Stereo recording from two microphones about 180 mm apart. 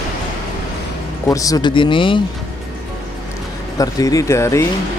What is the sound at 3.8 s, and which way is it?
Speech, 20° left (ahead or behind).